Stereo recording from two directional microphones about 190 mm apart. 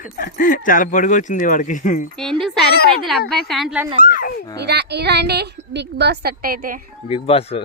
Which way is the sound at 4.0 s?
45° left (ahead or behind).